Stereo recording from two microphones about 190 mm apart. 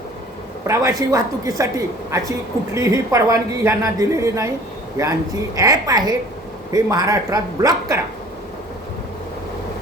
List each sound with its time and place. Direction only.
0.7 s a woman's voice: 15° right (ahead or behind)